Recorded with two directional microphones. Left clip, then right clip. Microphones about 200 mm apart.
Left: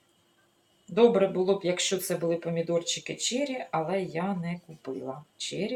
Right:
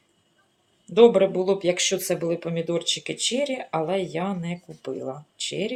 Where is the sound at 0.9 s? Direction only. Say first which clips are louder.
Right 6 dB; 45° right (ahead or behind).